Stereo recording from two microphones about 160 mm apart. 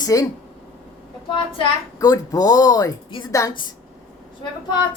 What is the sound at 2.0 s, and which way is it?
A woman's voice, 25° left (ahead or behind).